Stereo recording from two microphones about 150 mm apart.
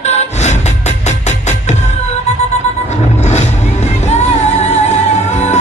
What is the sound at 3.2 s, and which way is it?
Music, 50° left (ahead or behind).